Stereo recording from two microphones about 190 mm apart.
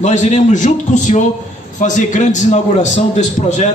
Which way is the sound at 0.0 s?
40° left (ahead or behind).